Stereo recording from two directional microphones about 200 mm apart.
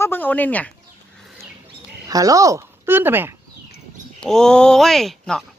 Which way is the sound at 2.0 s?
15° right (ahead or behind).